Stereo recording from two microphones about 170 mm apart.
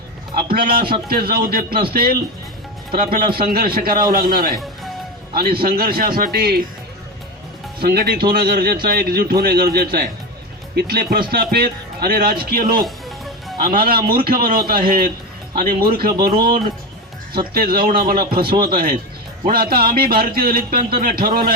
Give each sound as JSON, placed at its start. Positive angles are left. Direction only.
{"t": 0.3, "sound": "a man's voice", "side_deg": -65}
{"t": 7.8, "sound": "speech", "side_deg": -65}
{"t": 12.8, "sound": "music", "side_deg": 0}
{"t": 13.6, "sound": "speech", "side_deg": -60}
{"t": 17.5, "sound": "speech", "side_deg": -60}